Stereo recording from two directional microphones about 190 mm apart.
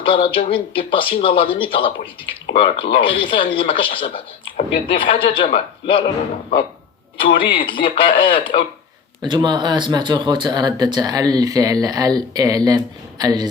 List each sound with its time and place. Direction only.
0.0 s speech: 25° left (ahead or behind)
7.2 s speech: 25° left (ahead or behind)
9.2 s speech: 25° right (ahead or behind)